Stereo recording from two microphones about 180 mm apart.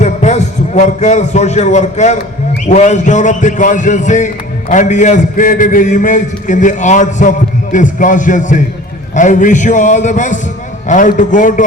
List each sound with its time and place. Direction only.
0.0 s a man's voice: 40° left (ahead or behind)